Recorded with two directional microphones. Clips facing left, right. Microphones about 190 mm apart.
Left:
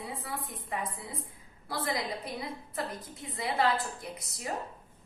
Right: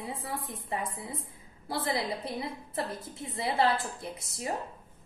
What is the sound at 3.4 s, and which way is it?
A woman's voice, 30° right (ahead or behind).